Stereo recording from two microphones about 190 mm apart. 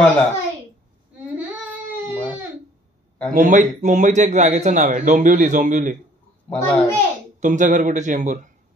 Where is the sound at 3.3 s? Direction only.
40° right (ahead or behind).